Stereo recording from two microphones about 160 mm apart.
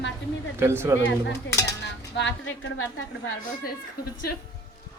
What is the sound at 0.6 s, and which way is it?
Speech, 15° right (ahead or behind).